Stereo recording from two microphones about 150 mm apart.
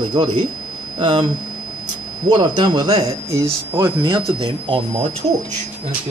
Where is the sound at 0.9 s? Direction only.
30° right (ahead or behind).